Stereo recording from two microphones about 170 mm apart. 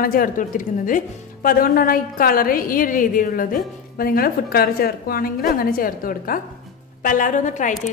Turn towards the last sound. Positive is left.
turn(degrees=50)  # may be behind; listen again after turning